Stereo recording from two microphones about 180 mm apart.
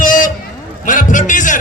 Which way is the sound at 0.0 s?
45° left (ahead or behind).